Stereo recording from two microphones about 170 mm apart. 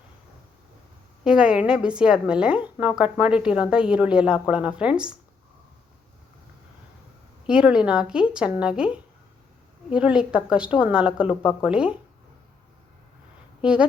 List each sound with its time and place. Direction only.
1.2 s a woman's voice: 5° right (ahead or behind)
7.4 s a woman's voice: 5° right (ahead or behind)
13.6 s speech: 5° right (ahead or behind)